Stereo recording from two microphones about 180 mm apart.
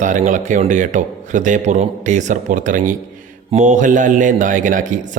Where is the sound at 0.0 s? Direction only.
45° right (ahead or behind).